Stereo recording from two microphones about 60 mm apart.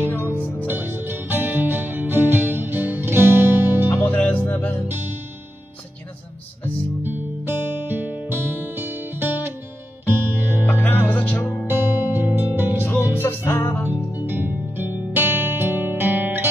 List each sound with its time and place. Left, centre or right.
0.0 s music: left
0.7 s music: right
4.0 s music: left
7.0 s music: right
10.7 s music: left
12.0 s music: right
12.8 s music: left
13.8 s music: right